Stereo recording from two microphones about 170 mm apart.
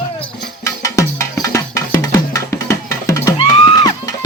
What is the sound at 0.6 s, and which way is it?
Music, 20° left (ahead or behind).